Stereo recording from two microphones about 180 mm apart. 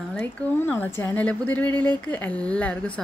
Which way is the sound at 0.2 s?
10° left (ahead or behind).